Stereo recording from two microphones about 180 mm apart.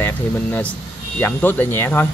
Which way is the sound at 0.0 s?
10° left (ahead or behind).